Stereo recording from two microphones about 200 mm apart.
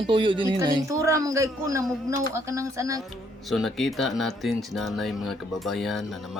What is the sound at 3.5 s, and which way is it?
Speech, centre (ahead or behind).